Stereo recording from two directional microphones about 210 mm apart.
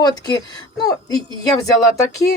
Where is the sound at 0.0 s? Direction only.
20° left (ahead or behind).